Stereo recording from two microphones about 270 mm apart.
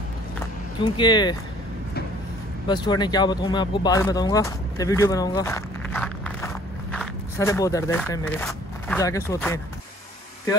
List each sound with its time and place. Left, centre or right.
0.8 s speech: centre
2.7 s speech: centre